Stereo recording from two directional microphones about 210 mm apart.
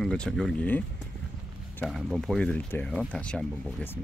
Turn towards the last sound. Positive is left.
turn(degrees=5)  # may be behind; listen again after turning